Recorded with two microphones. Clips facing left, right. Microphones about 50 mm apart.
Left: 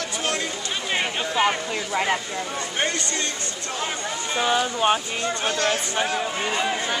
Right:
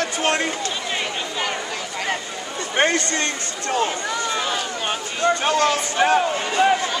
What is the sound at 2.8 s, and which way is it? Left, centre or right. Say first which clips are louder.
Speech: right 7 dB; right.